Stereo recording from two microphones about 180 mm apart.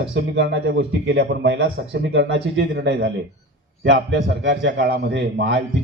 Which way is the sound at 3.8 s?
90° right.